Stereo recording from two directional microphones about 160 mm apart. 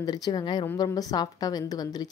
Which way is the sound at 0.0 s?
25° left (ahead or behind).